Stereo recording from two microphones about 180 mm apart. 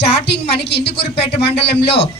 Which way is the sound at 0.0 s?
70° left (ahead or behind).